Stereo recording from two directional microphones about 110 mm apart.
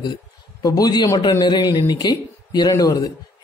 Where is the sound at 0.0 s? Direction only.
35° left (ahead or behind).